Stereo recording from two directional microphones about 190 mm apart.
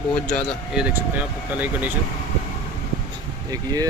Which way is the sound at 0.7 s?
5° right (ahead or behind).